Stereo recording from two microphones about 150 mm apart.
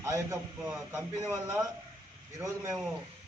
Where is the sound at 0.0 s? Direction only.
20° right (ahead or behind).